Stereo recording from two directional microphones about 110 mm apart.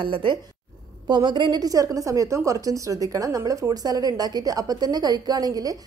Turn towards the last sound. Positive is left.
turn(degrees=-35)  # may be behind; listen again after turning